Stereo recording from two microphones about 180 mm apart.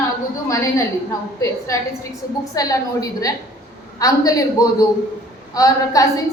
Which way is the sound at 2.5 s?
20° left (ahead or behind).